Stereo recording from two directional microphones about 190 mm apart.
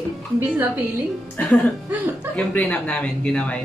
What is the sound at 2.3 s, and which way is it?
Speech, 10° left (ahead or behind).